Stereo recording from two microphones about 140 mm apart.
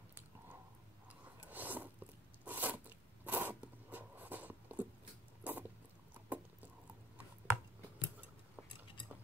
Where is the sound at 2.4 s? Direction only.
10° right (ahead or behind).